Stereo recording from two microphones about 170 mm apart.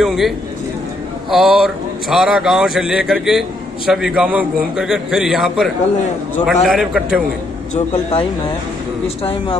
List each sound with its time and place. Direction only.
0.0 s a man's voice: centre (ahead or behind)
1.3 s a man's voice: centre (ahead or behind)
7.7 s speech: 35° left (ahead or behind)